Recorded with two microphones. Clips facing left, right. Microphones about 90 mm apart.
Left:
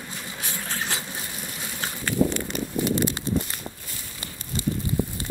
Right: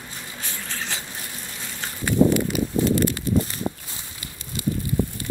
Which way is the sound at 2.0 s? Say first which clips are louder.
Right 6 dB; 5° right (ahead or behind).